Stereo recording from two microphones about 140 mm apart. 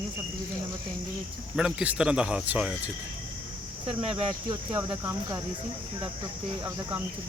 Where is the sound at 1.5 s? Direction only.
10° right (ahead or behind).